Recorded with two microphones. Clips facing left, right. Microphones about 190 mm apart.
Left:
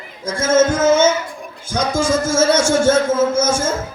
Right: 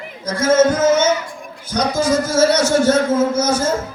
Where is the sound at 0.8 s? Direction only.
25° left (ahead or behind).